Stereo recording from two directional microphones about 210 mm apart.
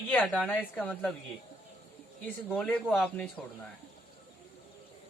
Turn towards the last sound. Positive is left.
turn(degrees=5)  # may be behind; listen again after turning